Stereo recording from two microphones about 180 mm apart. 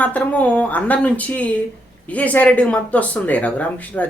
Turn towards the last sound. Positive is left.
turn(degrees=10)  # may be behind; listen again after turning